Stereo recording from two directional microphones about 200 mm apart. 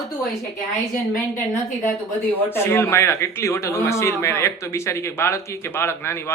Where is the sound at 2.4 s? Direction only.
10° left (ahead or behind).